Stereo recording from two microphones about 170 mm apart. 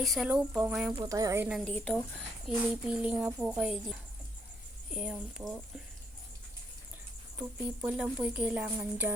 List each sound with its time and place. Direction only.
0.0 s speech: centre (ahead or behind)
0.9 s a woman's voice: 20° right (ahead or behind)
1.6 s speech: 5° left (ahead or behind)
7.3 s speech: 10° right (ahead or behind)